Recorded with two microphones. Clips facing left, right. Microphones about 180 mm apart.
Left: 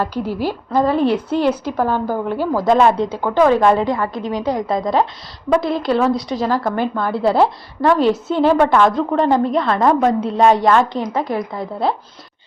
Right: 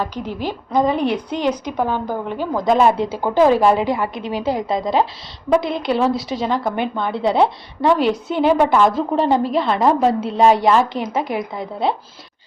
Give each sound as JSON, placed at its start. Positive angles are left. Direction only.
{"t": 0.1, "sound": "a woman's voice", "side_deg": 10}
{"t": 0.8, "sound": "a woman's voice", "side_deg": -15}
{"t": 1.1, "sound": "a woman's voice", "side_deg": 5}
{"t": 1.7, "sound": "a woman's voice", "side_deg": -15}
{"t": 2.0, "sound": "a woman's voice", "side_deg": 5}
{"t": 3.9, "sound": "a woman's voice", "side_deg": -20}
{"t": 4.7, "sound": "a woman's voice", "side_deg": 0}
{"t": 11.0, "sound": "a woman's voice", "side_deg": -20}